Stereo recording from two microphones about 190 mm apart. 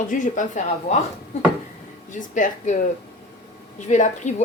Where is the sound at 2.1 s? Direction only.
40° left (ahead or behind).